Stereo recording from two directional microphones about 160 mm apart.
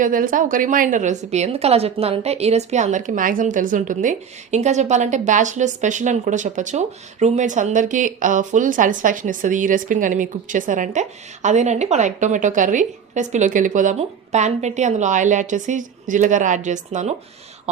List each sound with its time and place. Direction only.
0.0 s a woman's voice: 60° right (ahead or behind)